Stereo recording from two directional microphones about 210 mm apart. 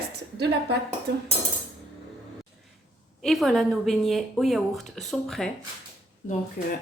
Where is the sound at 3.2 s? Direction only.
Centre (ahead or behind).